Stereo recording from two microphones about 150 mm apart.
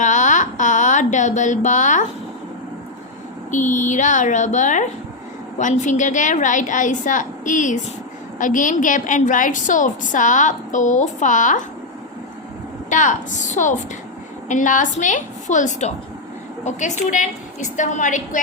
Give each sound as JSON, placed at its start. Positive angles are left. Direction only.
{"t": 0.0, "sound": "a sound", "side_deg": 55}
{"t": 3.5, "sound": "a woman's voice", "side_deg": 55}
{"t": 12.9, "sound": "a woman's voice", "side_deg": 55}